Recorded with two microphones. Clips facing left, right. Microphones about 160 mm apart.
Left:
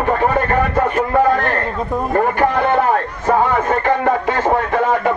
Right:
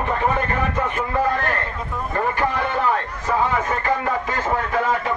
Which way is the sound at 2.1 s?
50° left (ahead or behind).